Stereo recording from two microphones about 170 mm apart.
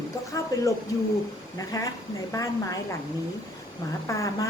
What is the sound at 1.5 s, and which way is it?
A woman's voice, 20° left (ahead or behind).